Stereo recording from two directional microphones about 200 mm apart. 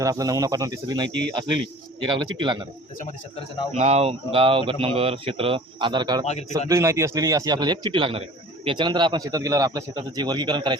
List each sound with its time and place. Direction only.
0.0 s a man's voice: 15° right (ahead or behind)
3.7 s a man's voice: 30° right (ahead or behind)